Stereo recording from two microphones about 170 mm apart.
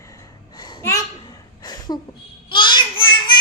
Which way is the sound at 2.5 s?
25° left (ahead or behind).